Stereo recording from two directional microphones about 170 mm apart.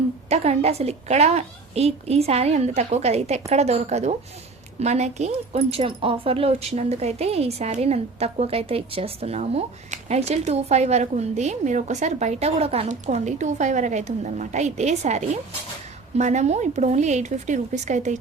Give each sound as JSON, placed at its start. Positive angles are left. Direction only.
{"t": 0.3, "sound": "speech", "side_deg": -40}